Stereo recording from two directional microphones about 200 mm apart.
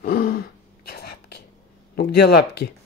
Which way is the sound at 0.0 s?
50° left (ahead or behind).